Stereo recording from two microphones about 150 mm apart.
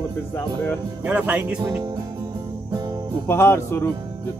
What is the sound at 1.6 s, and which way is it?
Speech, 20° right (ahead or behind).